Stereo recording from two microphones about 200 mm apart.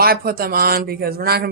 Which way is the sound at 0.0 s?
50° right (ahead or behind).